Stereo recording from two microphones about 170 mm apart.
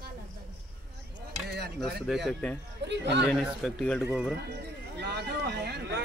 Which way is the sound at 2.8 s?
90° right.